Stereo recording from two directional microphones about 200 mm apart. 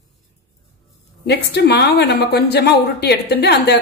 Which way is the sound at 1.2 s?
55° left (ahead or behind).